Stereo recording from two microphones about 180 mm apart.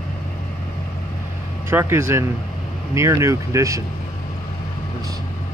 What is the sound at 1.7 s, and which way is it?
Speech, 15° right (ahead or behind).